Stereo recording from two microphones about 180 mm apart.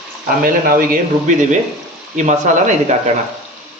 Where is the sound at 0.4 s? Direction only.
50° right (ahead or behind).